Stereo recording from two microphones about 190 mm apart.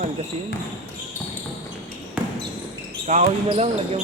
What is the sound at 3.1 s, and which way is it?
Speech, 40° right (ahead or behind).